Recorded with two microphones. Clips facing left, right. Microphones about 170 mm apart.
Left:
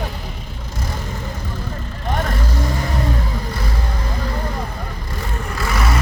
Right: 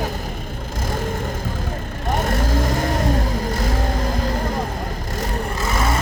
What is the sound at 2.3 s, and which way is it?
Vehicle, 45° right (ahead or behind).